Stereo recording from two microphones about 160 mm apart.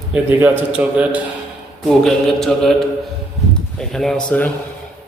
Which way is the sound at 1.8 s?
Centre (ahead or behind).